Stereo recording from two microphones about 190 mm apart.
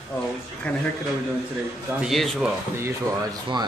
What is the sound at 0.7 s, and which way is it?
Speech, 5° left (ahead or behind).